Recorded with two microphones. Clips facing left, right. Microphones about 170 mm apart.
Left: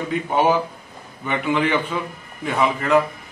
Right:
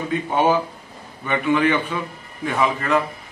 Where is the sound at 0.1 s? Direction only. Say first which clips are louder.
Even; 15° left (ahead or behind).